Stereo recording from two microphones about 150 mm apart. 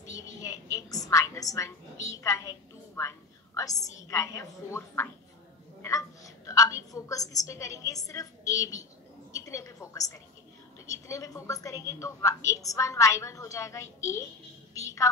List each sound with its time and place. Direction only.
0.7 s a woman's voice: 25° left (ahead or behind)
3.0 s a sound: 20° left (ahead or behind)
4.1 s a woman's voice: 20° left (ahead or behind)